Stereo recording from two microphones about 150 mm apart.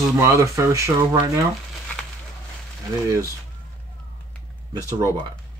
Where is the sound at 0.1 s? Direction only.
20° right (ahead or behind).